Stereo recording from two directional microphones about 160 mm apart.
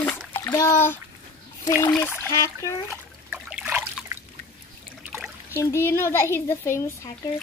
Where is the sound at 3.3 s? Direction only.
5° right (ahead or behind).